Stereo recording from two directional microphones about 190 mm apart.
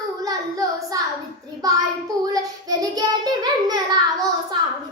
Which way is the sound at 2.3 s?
20° right (ahead or behind).